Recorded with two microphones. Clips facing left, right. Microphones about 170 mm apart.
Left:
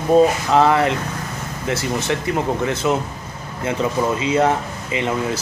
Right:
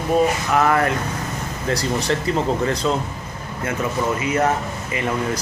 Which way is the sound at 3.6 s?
25° left (ahead or behind).